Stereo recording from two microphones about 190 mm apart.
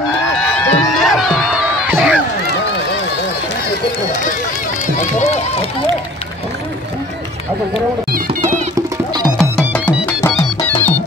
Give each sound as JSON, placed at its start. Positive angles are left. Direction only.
{"t": 0.4, "sound": "a sound", "side_deg": 10}
{"t": 1.1, "sound": "crowd", "side_deg": 0}
{"t": 4.9, "sound": "speech", "side_deg": 35}
{"t": 8.7, "sound": "music", "side_deg": -20}
{"t": 9.4, "sound": "music", "side_deg": 5}